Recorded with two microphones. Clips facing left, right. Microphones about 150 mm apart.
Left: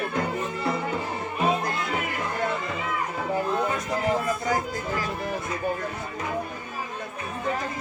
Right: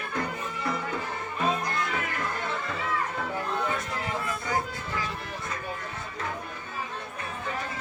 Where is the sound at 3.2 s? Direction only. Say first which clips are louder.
Left 5 dB; 5° left (ahead or behind).